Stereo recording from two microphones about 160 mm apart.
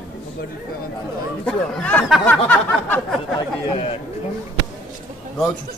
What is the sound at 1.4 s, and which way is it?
Speech, 5° left (ahead or behind).